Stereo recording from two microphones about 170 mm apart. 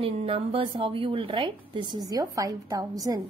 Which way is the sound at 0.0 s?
35° right (ahead or behind).